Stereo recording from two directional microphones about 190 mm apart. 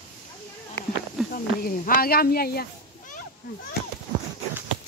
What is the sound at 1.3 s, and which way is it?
Speech, 50° left (ahead or behind).